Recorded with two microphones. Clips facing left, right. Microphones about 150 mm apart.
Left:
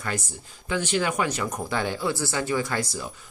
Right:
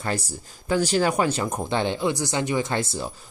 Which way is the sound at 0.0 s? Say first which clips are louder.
Right 3 dB; 35° right (ahead or behind).